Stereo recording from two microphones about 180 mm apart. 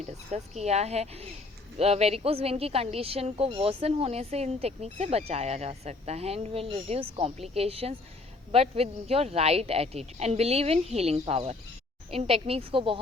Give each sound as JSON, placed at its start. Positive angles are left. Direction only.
{"t": 0.0, "sound": "speech", "side_deg": -40}